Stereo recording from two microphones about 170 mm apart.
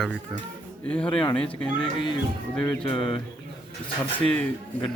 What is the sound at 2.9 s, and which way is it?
Speech, 30° left (ahead or behind).